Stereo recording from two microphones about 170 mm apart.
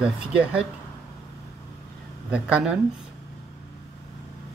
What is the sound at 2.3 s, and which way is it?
Speech, 5° right (ahead or behind).